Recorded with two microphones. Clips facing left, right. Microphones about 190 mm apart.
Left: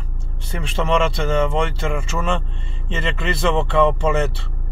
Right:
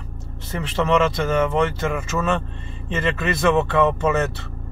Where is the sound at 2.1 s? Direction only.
10° left (ahead or behind).